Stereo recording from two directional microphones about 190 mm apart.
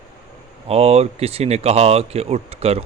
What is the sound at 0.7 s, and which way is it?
Speech, 30° right (ahead or behind).